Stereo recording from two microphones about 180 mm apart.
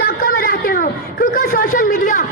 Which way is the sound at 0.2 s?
55° left (ahead or behind).